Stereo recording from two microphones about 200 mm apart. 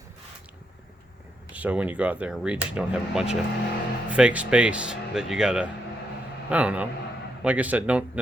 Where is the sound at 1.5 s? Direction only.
5° right (ahead or behind).